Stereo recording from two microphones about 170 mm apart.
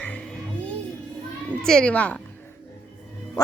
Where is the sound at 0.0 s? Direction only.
10° left (ahead or behind).